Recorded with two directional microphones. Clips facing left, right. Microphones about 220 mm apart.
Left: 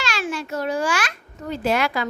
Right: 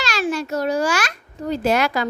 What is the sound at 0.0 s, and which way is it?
A child's voice, 40° right (ahead or behind).